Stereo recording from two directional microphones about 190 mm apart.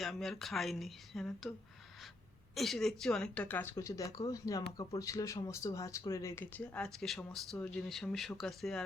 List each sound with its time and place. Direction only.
0.0 s speech: centre (ahead or behind)
2.6 s speech: centre (ahead or behind)